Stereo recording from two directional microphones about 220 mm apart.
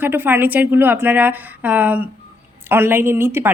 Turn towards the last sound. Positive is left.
turn(degrees=-10)  # may be behind; listen again after turning